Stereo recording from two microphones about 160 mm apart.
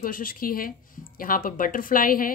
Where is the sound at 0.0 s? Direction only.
60° left (ahead or behind).